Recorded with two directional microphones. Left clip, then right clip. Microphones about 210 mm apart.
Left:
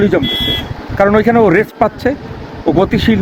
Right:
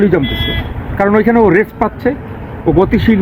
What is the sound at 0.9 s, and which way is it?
Speech, 55° left (ahead or behind).